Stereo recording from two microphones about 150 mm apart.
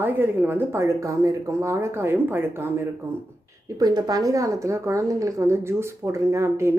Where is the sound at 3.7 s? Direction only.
25° right (ahead or behind).